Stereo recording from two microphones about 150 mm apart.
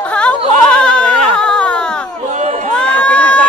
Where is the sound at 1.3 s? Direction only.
5° left (ahead or behind).